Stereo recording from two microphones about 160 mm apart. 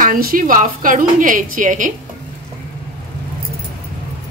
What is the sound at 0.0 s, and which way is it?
A woman's voice, 60° right (ahead or behind).